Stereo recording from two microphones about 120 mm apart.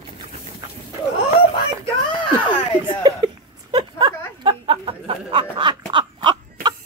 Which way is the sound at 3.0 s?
40° right (ahead or behind).